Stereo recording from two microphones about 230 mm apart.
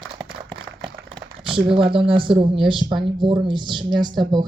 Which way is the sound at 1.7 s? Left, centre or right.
Right.